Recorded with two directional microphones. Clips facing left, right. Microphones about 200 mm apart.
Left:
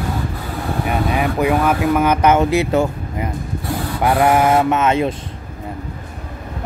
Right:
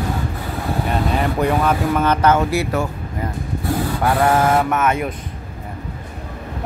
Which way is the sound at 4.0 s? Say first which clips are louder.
Left 3 dB; 20° left (ahead or behind).